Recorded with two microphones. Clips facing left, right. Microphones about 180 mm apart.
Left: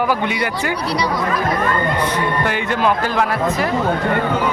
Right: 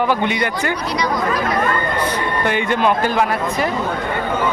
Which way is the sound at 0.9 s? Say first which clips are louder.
Left 1 dB; 35° left (ahead or behind).